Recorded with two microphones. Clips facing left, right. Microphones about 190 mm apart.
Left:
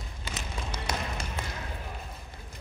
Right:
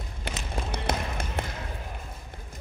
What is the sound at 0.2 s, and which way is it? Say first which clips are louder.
Basketball bounce: right 4 dB; 55° right (ahead or behind).